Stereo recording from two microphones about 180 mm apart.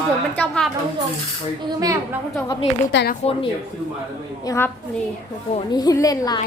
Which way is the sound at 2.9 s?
90° left.